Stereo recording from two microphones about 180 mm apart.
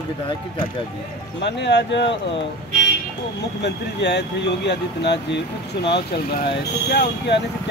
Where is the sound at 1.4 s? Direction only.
75° left (ahead or behind).